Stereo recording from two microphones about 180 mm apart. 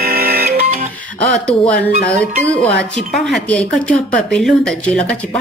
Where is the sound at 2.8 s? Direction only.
Centre (ahead or behind).